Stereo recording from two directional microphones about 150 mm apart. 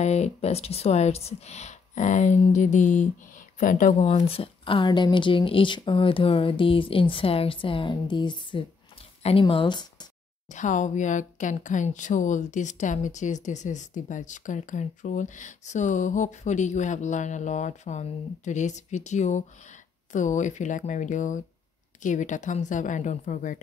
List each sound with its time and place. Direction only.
0.0 s speech: 50° left (ahead or behind); by 10.0 s 30° left (ahead or behind)
10.5 s a woman's voice: 55° left (ahead or behind)